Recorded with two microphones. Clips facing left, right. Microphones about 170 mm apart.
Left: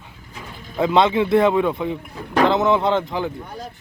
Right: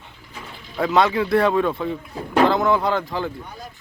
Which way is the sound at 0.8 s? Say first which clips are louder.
Left 2 dB; 25° left (ahead or behind).